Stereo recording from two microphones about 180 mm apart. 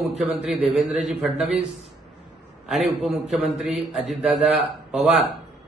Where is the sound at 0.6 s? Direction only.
35° right (ahead or behind).